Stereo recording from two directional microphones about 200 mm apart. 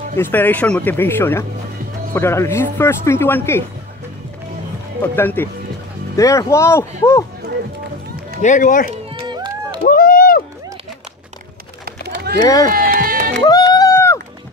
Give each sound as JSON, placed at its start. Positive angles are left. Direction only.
{"t": 0.1, "sound": "speech", "side_deg": 10}
{"t": 5.0, "sound": "speech", "side_deg": 10}
{"t": 8.4, "sound": "speech", "side_deg": 40}
{"t": 8.9, "sound": "run", "side_deg": -25}
{"t": 9.8, "sound": "a sound", "side_deg": 45}
{"t": 11.8, "sound": "a sound", "side_deg": -50}
{"t": 12.4, "sound": "speech", "side_deg": 15}
{"t": 12.7, "sound": "music", "side_deg": -45}
{"t": 13.5, "sound": "a sound", "side_deg": 15}